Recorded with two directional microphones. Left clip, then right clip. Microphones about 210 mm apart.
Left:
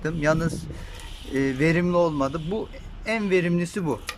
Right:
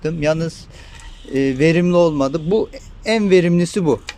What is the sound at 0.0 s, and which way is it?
Speech, 10° right (ahead or behind).